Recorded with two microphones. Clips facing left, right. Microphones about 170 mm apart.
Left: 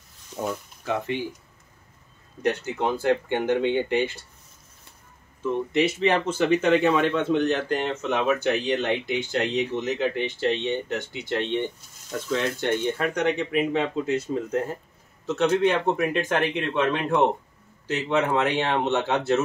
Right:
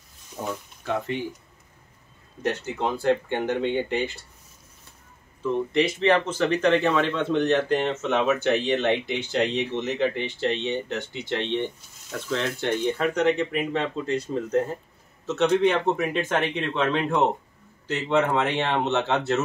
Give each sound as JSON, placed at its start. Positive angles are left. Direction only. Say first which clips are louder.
{"t": 2.4, "sound": "speech", "louder": "left 2 dB", "side_deg": 5}
{"t": 5.7, "sound": "speech", "louder": "right 1 dB", "side_deg": 5}